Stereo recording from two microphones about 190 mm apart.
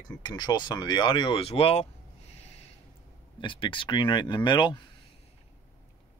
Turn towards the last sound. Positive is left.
turn(degrees=25)  # may be behind; listen again after turning